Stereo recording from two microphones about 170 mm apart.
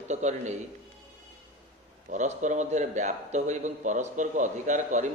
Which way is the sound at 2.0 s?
45° right (ahead or behind).